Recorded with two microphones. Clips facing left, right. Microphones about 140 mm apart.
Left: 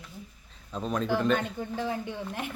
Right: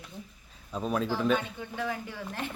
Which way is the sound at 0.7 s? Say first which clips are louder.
Left 1 dB; 5° right (ahead or behind).